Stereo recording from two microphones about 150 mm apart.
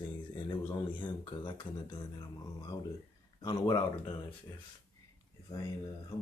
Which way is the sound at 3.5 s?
30° left (ahead or behind).